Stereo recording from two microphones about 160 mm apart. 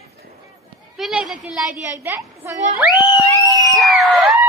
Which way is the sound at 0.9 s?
Centre (ahead or behind).